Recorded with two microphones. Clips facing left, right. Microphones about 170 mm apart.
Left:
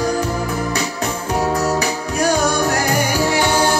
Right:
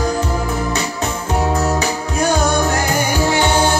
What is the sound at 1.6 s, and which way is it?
Music, 25° right (ahead or behind).